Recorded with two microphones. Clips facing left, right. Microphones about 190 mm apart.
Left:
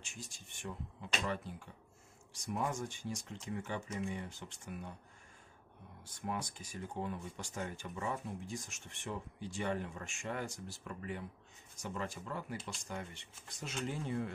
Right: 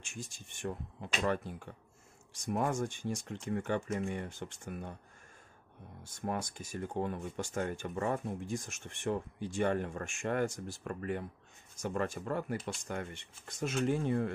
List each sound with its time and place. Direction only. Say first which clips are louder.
0.6 s speech: right 6 dB; 55° right (ahead or behind)
6.2 s speech: right 4 dB; 50° right (ahead or behind)